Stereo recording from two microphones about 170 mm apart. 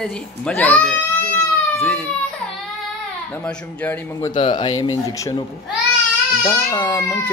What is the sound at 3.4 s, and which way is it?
Speech, 10° left (ahead or behind).